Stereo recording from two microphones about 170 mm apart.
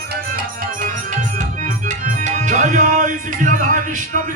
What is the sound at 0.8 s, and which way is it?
Music, 50° right (ahead or behind).